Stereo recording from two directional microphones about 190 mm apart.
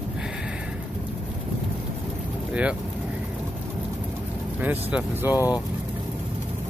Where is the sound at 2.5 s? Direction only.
5° right (ahead or behind).